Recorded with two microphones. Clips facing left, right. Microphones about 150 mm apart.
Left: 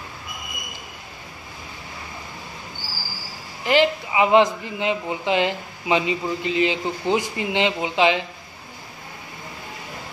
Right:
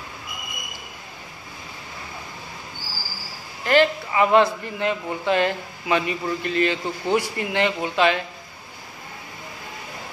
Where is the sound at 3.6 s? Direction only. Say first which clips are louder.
Even; 15° left (ahead or behind).